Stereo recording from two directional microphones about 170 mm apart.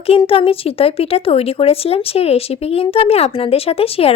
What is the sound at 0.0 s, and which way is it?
A woman's voice, 35° left (ahead or behind).